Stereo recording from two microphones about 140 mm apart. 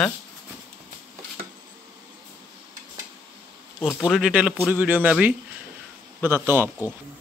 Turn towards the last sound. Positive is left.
turn(degrees=-15)  # may be behind; listen again after turning